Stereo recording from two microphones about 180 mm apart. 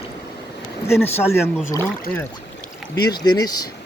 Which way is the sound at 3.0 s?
25° left (ahead or behind).